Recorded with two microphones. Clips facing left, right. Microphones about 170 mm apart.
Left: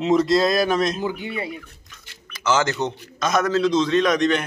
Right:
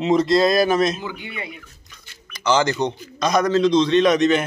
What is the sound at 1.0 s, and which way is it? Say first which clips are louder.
Speech: left 5 dB; 40° left (ahead or behind).